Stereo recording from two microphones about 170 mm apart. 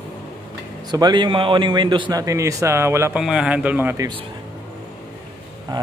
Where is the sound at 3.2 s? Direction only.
5° right (ahead or behind).